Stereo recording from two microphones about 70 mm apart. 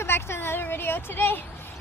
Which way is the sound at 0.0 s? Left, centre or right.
Left.